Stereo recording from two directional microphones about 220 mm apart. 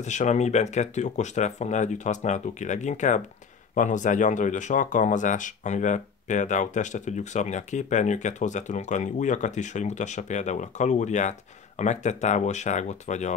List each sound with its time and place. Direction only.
0.0 s speech: 30° left (ahead or behind)